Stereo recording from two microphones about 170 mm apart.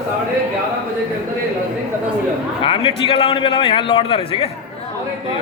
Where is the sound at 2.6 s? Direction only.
30° left (ahead or behind).